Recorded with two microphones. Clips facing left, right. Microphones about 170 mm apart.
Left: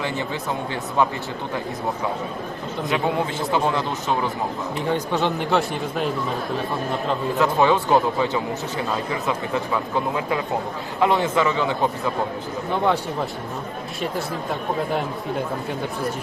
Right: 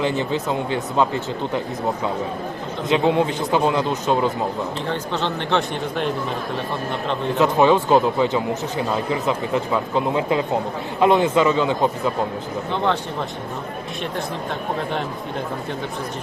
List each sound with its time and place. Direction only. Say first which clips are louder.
0.3 s speech: right 4 dB; 20° right (ahead or behind)
2.9 s speech: right 6 dB; 20° right (ahead or behind)
4.9 s speech: left 6 dB; 15° left (ahead or behind)
7.3 s speech: right 3 dB; 20° right (ahead or behind)
12.7 s speech: left 1 dB; 10° left (ahead or behind)